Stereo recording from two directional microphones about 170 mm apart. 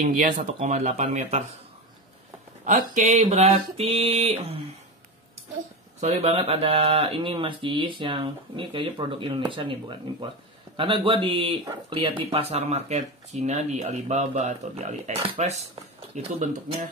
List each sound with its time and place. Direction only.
0.0 s speech: 55° right (ahead or behind)
2.6 s speech: 50° right (ahead or behind); by 4.7 s 35° right (ahead or behind)
5.9 s speech: 40° right (ahead or behind)